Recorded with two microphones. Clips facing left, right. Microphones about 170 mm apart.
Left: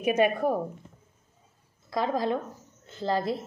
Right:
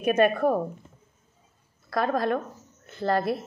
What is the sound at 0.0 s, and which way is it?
Speech, 15° left (ahead or behind).